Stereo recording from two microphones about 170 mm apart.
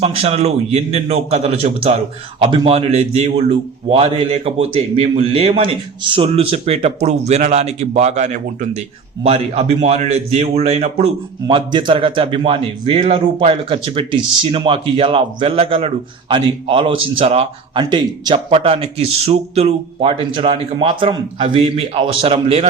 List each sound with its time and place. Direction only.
0.0 s a man's voice: 35° right (ahead or behind)
17.8 s a man's voice: 25° right (ahead or behind)